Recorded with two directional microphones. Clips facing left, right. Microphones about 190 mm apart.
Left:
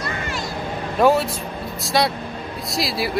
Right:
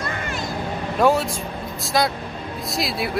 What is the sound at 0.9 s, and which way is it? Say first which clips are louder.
A man's voice: left 2 dB; centre (ahead or behind).